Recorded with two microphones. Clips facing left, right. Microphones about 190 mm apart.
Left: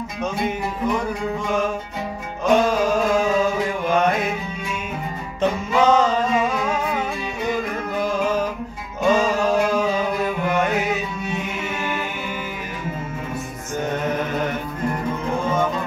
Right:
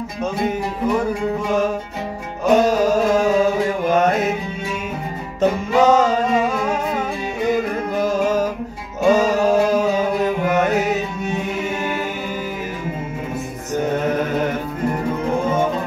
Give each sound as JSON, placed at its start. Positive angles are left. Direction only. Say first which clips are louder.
{"t": 0.2, "sound": "music", "louder": "right 3 dB", "side_deg": -40}
{"t": 2.5, "sound": "mantra", "louder": "right 3 dB", "side_deg": -40}
{"t": 5.4, "sound": "music", "louder": "right 3 dB", "side_deg": -40}
{"t": 8.0, "sound": "music", "louder": "right 3 dB", "side_deg": -40}